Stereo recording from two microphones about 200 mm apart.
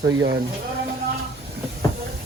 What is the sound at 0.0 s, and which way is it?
Speech, 15° right (ahead or behind).